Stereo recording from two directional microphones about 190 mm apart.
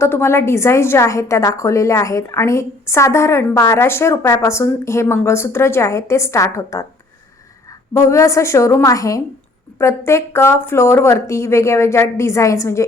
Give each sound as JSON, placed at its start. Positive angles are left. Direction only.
{"t": 0.0, "sound": "a woman's voice", "side_deg": 15}
{"t": 7.9, "sound": "a woman's voice", "side_deg": 15}